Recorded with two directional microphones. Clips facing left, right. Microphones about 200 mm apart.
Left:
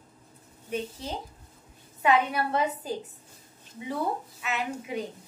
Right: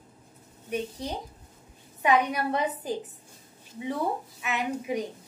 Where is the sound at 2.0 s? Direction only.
15° right (ahead or behind).